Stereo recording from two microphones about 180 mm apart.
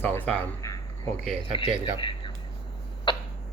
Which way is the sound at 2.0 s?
25° left (ahead or behind).